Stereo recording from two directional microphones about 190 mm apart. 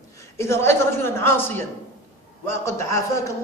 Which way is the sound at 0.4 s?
15° left (ahead or behind).